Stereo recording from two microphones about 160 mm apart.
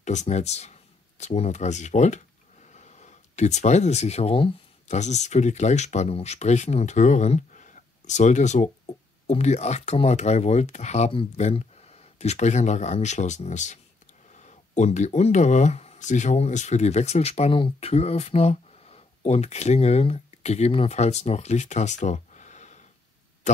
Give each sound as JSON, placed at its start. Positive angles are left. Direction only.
{"t": 0.0, "sound": "speech", "side_deg": 45}